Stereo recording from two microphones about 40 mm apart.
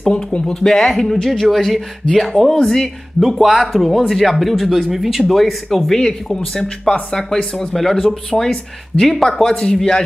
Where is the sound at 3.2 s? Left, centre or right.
Centre.